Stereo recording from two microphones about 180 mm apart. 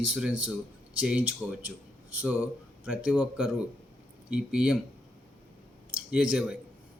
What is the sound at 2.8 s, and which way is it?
A man's voice, 5° right (ahead or behind).